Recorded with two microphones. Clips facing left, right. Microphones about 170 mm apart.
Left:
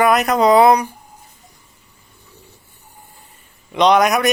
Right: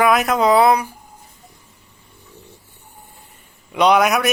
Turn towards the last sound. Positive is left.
turn(degrees=0)  # may be behind; listen again after turning